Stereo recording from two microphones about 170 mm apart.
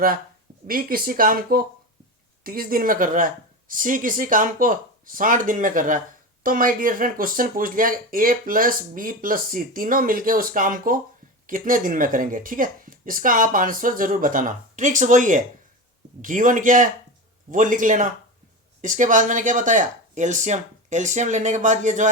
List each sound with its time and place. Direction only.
0.7 s speech: 60° right (ahead or behind)